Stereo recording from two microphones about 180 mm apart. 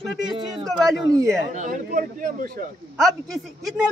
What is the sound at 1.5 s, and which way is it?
Speech, 45° right (ahead or behind).